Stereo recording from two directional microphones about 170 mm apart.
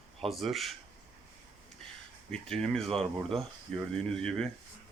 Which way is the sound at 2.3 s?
5° left (ahead or behind).